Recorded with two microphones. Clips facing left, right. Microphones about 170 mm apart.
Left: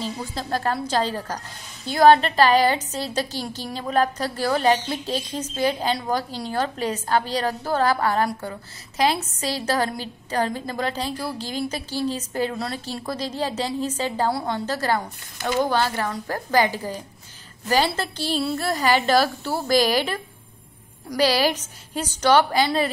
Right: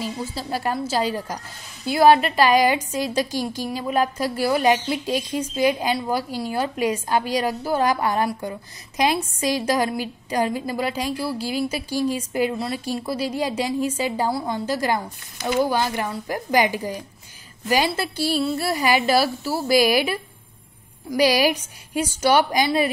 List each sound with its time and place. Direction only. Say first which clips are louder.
0.0 s a woman's voice: right 1 dB; 5° right (ahead or behind)